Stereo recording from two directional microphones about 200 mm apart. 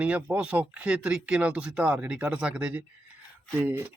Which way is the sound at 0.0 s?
5° right (ahead or behind).